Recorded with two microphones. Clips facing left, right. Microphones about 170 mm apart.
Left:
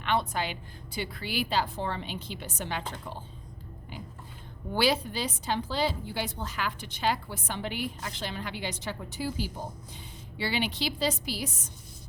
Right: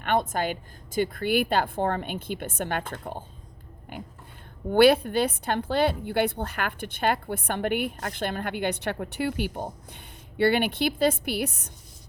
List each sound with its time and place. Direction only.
0.0 s a woman's voice: 50° right (ahead or behind)